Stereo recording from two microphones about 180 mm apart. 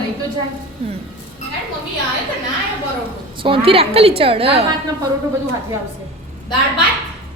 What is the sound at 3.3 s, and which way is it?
A woman's voice, 30° right (ahead or behind).